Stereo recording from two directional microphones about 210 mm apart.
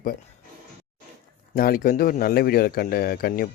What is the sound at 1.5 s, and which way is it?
Speech, 45° left (ahead or behind).